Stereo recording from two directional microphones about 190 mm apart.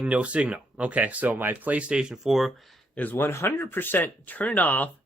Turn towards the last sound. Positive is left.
turn(degrees=10)  # may be behind; listen again after turning